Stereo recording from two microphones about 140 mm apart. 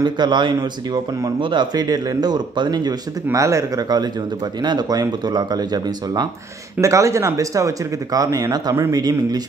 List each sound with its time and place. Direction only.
0.0 s speech: 30° right (ahead or behind)